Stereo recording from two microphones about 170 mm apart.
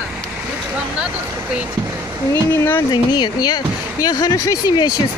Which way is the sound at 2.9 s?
25° left (ahead or behind).